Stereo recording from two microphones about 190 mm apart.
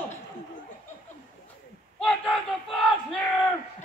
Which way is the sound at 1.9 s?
5° left (ahead or behind).